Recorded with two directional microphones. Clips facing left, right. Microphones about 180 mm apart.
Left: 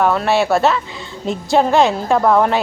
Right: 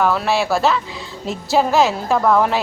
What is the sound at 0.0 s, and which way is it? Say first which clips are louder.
A woman's voice: left 2 dB; centre (ahead or behind).